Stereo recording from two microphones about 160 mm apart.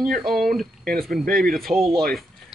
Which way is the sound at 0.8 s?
70° right (ahead or behind).